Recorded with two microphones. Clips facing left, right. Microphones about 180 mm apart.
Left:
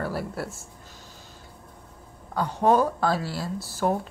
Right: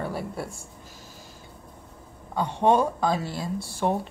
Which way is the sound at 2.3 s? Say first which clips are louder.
Even; 25° right (ahead or behind).